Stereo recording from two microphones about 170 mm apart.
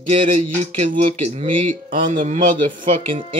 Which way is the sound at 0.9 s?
35° right (ahead or behind).